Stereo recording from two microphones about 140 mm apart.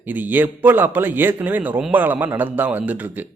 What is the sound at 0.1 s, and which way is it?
Speech, 15° right (ahead or behind).